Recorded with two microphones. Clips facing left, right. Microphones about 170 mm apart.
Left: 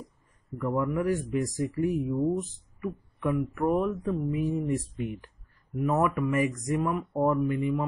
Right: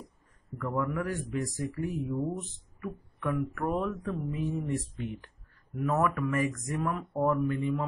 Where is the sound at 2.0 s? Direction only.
5° left (ahead or behind).